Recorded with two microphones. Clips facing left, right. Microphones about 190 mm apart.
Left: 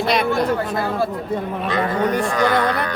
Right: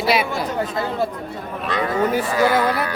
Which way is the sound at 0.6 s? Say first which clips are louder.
Left 1 dB; 65° left (ahead or behind).